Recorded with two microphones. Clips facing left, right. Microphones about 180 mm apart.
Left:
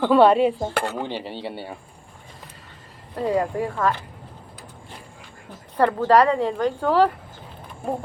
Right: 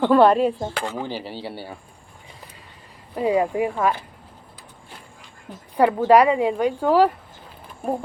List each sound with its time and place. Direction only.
0.0 s speech: centre (ahead or behind)
0.7 s cutlery: 60° left (ahead or behind)
1.0 s speech: 5° right (ahead or behind)
3.2 s speech: 15° right (ahead or behind)
5.7 s speech: 10° right (ahead or behind)